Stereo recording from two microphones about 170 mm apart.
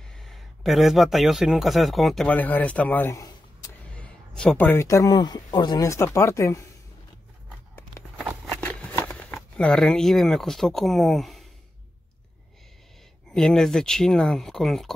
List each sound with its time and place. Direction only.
0.1 s a man's voice: centre (ahead or behind); by 3.3 s 20° left (ahead or behind)
3.9 s speech: 5° left (ahead or behind)
8.2 s a sound: 5° left (ahead or behind)
13.3 s speech: 5° left (ahead or behind)